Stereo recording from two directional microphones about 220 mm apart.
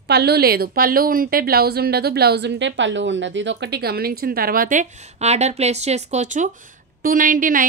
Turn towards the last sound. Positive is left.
turn(degrees=-40)  # may be behind; listen again after turning